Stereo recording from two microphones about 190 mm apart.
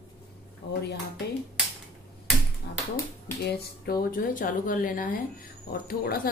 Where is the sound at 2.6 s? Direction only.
60° left (ahead or behind).